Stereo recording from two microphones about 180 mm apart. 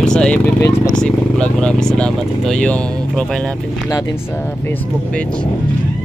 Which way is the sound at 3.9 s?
20° left (ahead or behind).